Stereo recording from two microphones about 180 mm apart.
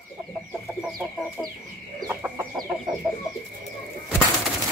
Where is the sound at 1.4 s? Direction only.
5° left (ahead or behind).